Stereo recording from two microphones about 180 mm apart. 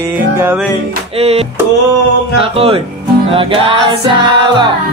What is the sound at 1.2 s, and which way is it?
Music, 35° right (ahead or behind).